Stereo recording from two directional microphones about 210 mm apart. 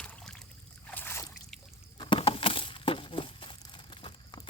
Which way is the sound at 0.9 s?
10° left (ahead or behind).